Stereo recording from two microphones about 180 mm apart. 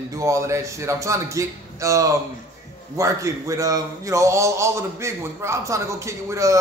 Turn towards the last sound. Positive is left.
turn(degrees=-15)  # may be behind; listen again after turning